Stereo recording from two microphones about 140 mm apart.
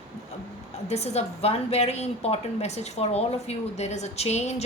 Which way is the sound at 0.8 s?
50° left (ahead or behind).